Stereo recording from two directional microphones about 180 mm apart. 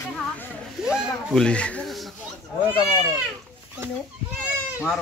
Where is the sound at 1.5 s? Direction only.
5° left (ahead or behind).